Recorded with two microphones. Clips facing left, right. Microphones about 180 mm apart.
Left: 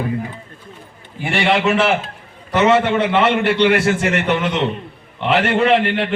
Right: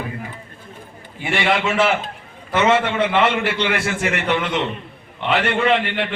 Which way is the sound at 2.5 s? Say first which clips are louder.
Left 3 dB; centre (ahead or behind).